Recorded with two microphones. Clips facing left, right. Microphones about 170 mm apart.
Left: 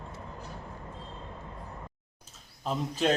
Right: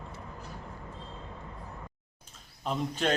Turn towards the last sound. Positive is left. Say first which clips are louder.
# left 1 dB
turn(degrees=5)  # may be behind; listen again after turning